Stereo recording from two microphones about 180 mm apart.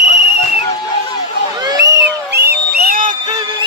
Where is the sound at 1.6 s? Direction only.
20° right (ahead or behind).